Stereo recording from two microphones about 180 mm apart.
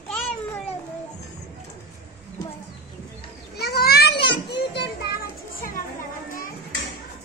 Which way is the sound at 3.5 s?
60° left (ahead or behind).